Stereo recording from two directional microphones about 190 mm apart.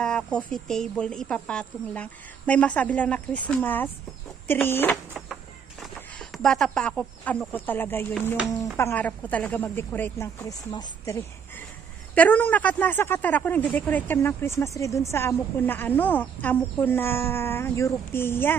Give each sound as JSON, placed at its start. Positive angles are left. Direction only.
{"t": 0.0, "sound": "a woman's voice", "side_deg": 5}
{"t": 5.1, "sound": "a sound", "side_deg": -5}
{"t": 5.9, "sound": "speech", "side_deg": 5}